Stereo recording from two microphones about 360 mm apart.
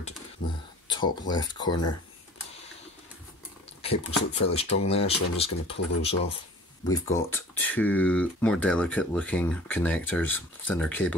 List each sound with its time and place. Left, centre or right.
0.9 s speech: centre
3.8 s speech: centre